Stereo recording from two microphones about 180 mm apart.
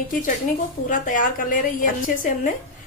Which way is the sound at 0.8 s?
50° left (ahead or behind).